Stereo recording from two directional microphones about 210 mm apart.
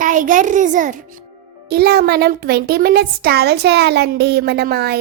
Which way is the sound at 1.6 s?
50° right (ahead or behind).